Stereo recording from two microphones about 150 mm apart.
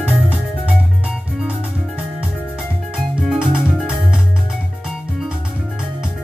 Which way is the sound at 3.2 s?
5° right (ahead or behind).